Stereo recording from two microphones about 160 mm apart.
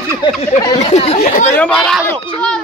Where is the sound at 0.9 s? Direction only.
40° left (ahead or behind).